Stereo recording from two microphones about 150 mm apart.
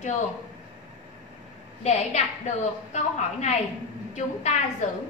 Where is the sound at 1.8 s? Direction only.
50° left (ahead or behind).